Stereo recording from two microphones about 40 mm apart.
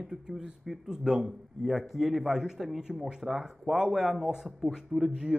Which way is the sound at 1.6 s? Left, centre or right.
Centre.